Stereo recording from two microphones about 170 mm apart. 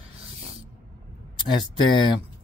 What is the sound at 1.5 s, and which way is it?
Speech, 25° left (ahead or behind).